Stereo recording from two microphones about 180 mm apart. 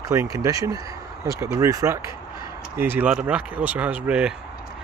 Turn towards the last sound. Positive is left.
turn(degrees=-5)  # may be behind; listen again after turning